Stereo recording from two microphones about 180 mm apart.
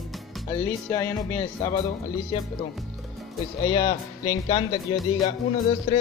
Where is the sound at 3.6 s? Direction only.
25° left (ahead or behind).